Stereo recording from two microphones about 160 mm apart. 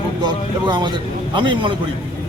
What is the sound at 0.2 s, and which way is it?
A man's voice, 30° right (ahead or behind).